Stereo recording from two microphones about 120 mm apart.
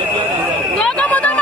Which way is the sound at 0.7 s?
10° left (ahead or behind).